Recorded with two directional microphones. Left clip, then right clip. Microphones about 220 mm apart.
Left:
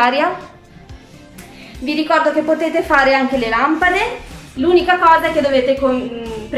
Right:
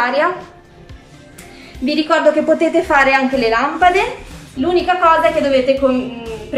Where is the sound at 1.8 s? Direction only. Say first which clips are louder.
Right 2 dB; 5° right (ahead or behind).